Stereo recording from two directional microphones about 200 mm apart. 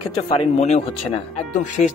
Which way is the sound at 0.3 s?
35° left (ahead or behind).